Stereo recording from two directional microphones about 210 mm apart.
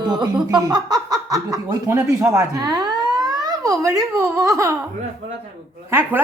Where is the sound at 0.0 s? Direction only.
20° right (ahead or behind).